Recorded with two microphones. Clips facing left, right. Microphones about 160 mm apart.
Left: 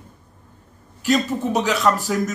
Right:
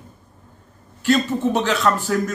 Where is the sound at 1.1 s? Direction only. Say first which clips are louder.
Right 1 dB; 15° left (ahead or behind).